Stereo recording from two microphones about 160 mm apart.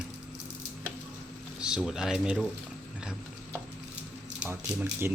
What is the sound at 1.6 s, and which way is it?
Speech, 5° right (ahead or behind).